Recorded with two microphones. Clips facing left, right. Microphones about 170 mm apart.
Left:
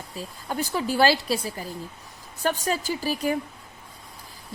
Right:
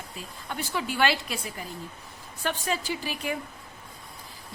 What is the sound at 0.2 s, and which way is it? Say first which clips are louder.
A woman's voice: left 6 dB; 40° left (ahead or behind).